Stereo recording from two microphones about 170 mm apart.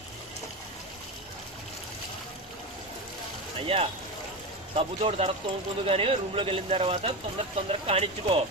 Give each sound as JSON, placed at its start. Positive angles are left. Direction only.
{"t": 3.6, "sound": "speech", "side_deg": -35}